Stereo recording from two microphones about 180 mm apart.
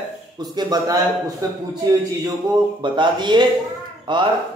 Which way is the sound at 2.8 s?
25° right (ahead or behind).